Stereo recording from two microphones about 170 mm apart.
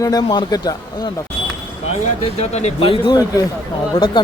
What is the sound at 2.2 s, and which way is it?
A man's voice, 40° left (ahead or behind).